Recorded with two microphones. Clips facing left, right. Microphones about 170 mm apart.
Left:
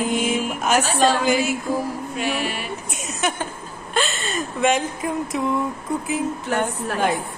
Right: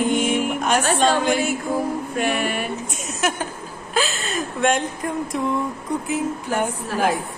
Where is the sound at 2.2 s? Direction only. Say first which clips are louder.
Right 3 dB; 55° right (ahead or behind).